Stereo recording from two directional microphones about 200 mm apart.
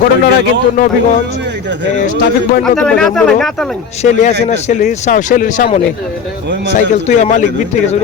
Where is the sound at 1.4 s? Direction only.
60° right (ahead or behind).